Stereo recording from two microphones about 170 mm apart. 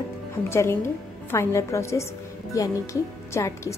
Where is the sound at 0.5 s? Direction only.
15° left (ahead or behind).